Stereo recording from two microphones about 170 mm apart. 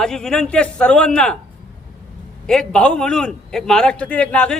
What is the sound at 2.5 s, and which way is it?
A man's voice, 5° left (ahead or behind).